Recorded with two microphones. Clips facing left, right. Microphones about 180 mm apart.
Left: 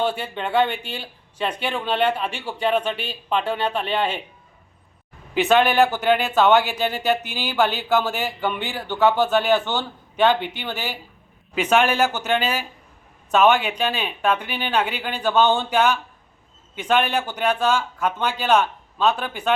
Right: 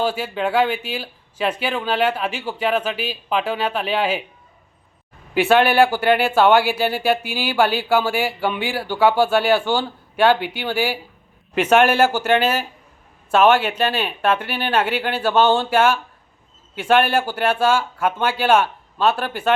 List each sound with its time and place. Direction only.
0.0 s speech: 5° right (ahead or behind)
5.3 s speech: 10° right (ahead or behind)